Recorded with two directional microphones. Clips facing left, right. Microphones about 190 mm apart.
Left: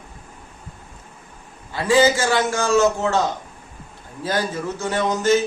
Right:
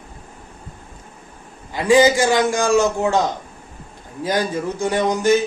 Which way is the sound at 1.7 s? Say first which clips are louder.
Right 3 dB; 15° right (ahead or behind).